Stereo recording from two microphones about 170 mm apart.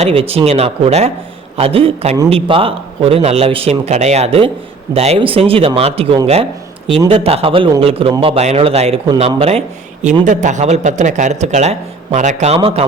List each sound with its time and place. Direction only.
0.0 s a man's voice: 35° right (ahead or behind)